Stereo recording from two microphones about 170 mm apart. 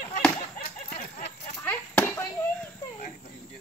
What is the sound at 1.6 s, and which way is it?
Chop, 10° left (ahead or behind).